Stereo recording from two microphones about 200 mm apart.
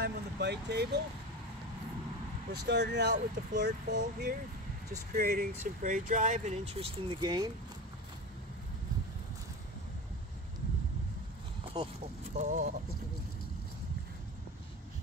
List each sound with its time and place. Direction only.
0.0 s vehicle: 55° right (ahead or behind)
2.7 s speech: 55° right (ahead or behind); by 7.5 s 20° right (ahead or behind)
11.7 s speech: 20° right (ahead or behind)
12.4 s speech: 40° right (ahead or behind)